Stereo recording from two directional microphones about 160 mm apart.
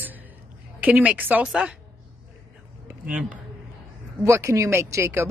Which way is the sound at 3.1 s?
10° right (ahead or behind).